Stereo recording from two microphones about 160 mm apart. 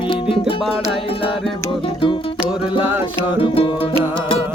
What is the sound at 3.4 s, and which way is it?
Music, 35° left (ahead or behind).